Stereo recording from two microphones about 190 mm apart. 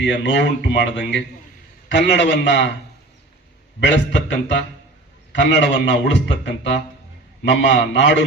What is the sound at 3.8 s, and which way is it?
Speech, 65° left (ahead or behind).